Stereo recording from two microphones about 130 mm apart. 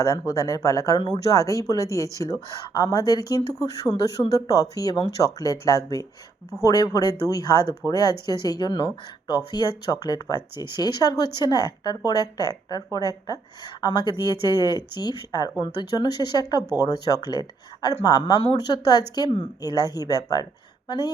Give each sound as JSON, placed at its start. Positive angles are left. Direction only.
{"t": 0.0, "sound": "speech", "side_deg": 25}